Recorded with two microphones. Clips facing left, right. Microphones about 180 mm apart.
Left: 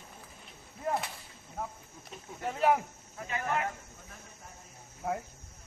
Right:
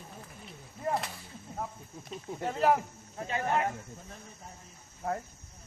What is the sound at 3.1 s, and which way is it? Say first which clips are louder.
Speech: right 3 dB; 30° right (ahead or behind).